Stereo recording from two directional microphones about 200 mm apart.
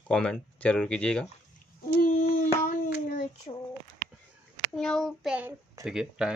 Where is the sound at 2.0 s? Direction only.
40° left (ahead or behind).